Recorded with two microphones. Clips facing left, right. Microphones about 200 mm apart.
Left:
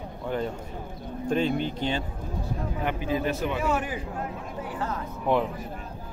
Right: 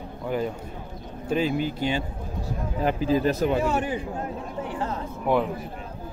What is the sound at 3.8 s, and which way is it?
Speech, 30° right (ahead or behind).